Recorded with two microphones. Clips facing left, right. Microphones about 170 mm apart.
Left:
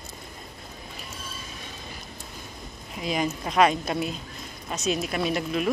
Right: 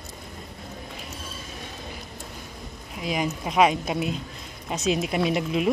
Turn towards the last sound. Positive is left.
turn(degrees=-15)  # may be behind; listen again after turning